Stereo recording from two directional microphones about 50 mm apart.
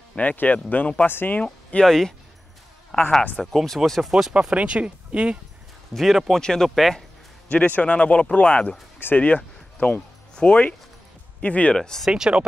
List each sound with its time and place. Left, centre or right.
0.1 s speech: left
1.4 s speech: left
1.9 s speech: centre
4.1 s speech: centre
5.9 s speech: centre
6.4 s speech: centre
7.4 s speech: left
11.7 s speech: centre
12.1 s speech: centre